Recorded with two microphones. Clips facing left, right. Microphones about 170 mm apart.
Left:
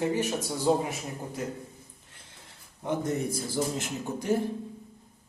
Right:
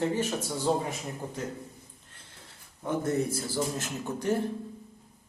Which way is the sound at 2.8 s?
15° left (ahead or behind).